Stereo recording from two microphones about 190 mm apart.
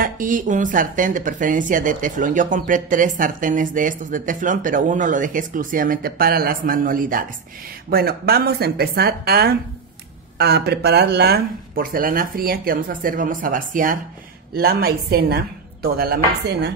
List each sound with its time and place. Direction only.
0.0 s speech: 45° right (ahead or behind)